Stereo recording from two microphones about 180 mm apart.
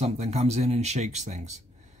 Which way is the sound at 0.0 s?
35° right (ahead or behind).